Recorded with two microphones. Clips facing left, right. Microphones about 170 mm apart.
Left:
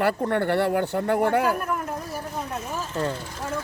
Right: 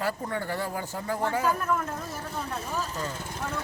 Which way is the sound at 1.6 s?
15° left (ahead or behind).